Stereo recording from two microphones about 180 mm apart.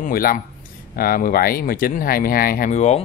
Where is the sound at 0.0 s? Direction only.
55° left (ahead or behind).